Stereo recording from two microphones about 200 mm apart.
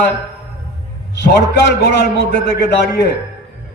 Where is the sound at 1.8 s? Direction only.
55° left (ahead or behind).